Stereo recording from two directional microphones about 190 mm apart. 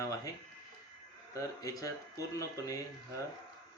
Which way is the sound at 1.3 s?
20° left (ahead or behind).